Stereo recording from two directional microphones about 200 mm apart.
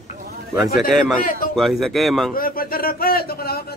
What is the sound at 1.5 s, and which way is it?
Speech, centre (ahead or behind).